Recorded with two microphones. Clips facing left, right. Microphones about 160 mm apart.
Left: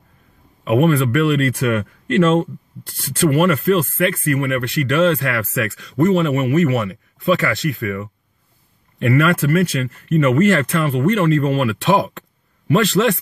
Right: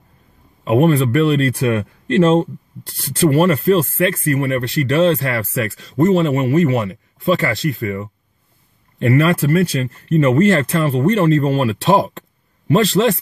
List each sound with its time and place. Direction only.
0.7 s speech: 30° right (ahead or behind)